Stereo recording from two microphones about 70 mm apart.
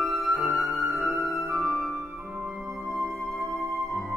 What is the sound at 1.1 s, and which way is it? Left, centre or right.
Music, right.